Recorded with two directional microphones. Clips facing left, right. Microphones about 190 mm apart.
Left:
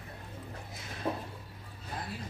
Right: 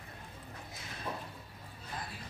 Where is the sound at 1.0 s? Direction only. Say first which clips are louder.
Left 7 dB; 30° left (ahead or behind).